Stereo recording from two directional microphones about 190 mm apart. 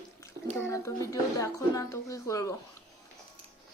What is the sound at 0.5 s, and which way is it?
Speech, 15° left (ahead or behind).